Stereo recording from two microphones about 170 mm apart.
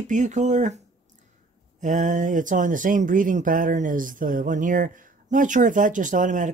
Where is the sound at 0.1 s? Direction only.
45° right (ahead or behind).